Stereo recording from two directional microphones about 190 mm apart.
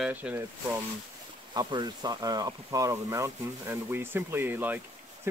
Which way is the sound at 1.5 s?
20° right (ahead or behind).